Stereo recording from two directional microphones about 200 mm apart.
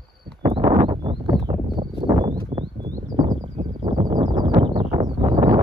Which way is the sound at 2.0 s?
20° right (ahead or behind).